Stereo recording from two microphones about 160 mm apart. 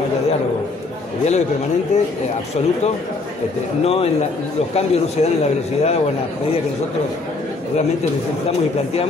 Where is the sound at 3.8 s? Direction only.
40° left (ahead or behind).